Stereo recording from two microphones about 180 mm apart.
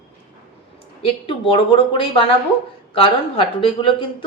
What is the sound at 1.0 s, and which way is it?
Speech, 30° left (ahead or behind).